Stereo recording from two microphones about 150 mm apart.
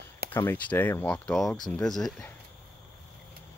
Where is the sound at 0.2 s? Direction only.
90° right.